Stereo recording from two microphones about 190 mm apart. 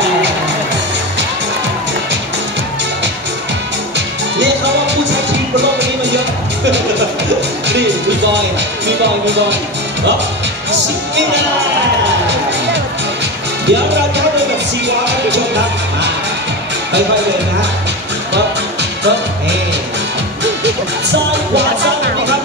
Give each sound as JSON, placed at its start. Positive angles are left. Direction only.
{"t": 3.9, "sound": "music", "side_deg": -70}
{"t": 7.6, "sound": "music", "side_deg": -65}
{"t": 10.7, "sound": "music", "side_deg": -70}
{"t": 13.7, "sound": "music", "side_deg": -65}
{"t": 18.3, "sound": "music", "side_deg": -65}
{"t": 21.3, "sound": "music", "side_deg": -65}